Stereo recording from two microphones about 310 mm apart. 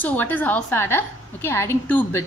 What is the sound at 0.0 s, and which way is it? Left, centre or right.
A woman's voice, centre.